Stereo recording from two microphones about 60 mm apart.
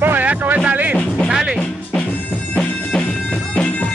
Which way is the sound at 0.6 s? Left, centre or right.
Right.